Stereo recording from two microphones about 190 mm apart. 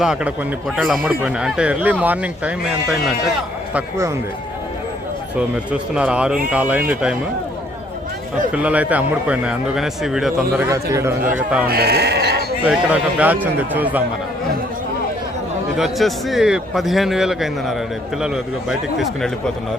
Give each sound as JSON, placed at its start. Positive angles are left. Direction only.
{"t": 0.0, "sound": "a man's voice", "side_deg": -5}
{"t": 3.8, "sound": "speech", "side_deg": -15}
{"t": 5.4, "sound": "a man's voice", "side_deg": -5}
{"t": 8.5, "sound": "a man's voice", "side_deg": -5}
{"t": 10.6, "sound": "speech", "side_deg": -15}
{"t": 11.7, "sound": "speech", "side_deg": -55}
{"t": 12.6, "sound": "speech", "side_deg": -5}
{"t": 15.8, "sound": "a man's voice", "side_deg": 0}
{"t": 18.9, "sound": "a man's voice", "side_deg": 0}